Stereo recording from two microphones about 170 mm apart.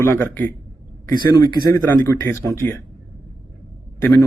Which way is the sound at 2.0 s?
15° left (ahead or behind).